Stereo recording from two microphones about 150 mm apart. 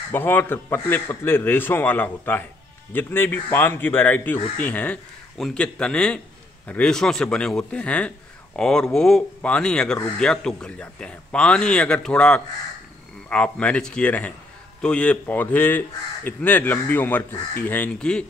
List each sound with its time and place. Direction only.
0.1 s a man's voice: 15° left (ahead or behind)